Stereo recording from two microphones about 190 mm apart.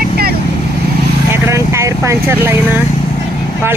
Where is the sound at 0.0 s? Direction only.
55° right (ahead or behind).